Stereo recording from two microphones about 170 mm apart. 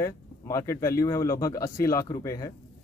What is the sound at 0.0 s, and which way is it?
Speech, 15° left (ahead or behind).